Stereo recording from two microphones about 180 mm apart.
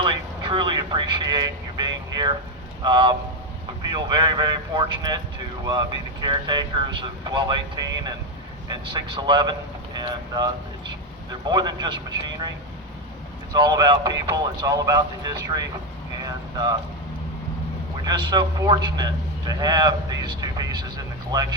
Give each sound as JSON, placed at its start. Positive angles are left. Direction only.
{"t": 0.0, "sound": "vehicle", "side_deg": -30}
{"t": 2.8, "sound": "a man's voice", "side_deg": -25}
{"t": 13.5, "sound": "a man's voice", "side_deg": -20}
{"t": 16.2, "sound": "vehicle", "side_deg": -20}
{"t": 18.0, "sound": "a man's voice", "side_deg": -25}